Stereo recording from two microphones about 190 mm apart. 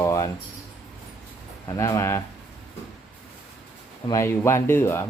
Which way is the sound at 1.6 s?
15° left (ahead or behind).